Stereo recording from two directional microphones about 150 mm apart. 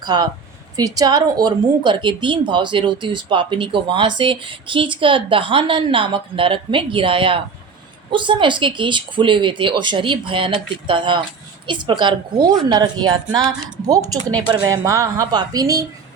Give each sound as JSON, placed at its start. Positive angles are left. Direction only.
{"t": 0.0, "sound": "a woman's voice", "side_deg": -25}